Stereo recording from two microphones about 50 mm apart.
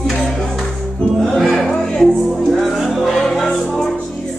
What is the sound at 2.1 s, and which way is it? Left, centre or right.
Music, centre.